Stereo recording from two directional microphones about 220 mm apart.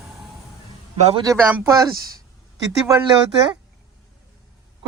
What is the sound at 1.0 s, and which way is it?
Speech, 25° right (ahead or behind).